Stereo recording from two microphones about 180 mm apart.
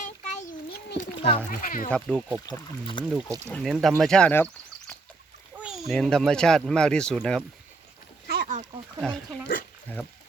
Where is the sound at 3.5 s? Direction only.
5° left (ahead or behind).